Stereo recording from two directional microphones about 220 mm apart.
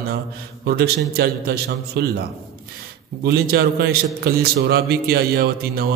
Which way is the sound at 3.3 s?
45° right (ahead or behind).